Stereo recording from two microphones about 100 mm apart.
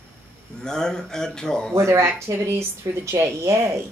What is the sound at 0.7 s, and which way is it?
A man's voice, 5° left (ahead or behind).